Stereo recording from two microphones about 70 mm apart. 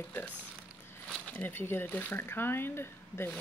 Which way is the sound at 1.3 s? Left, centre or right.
Left.